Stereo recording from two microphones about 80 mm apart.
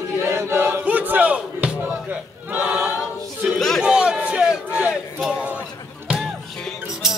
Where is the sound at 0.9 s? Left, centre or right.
Centre.